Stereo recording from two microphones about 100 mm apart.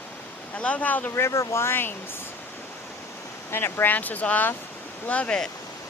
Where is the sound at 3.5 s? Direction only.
20° left (ahead or behind).